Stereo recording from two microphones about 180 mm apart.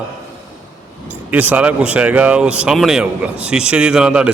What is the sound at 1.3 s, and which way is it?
Speech, 10° right (ahead or behind).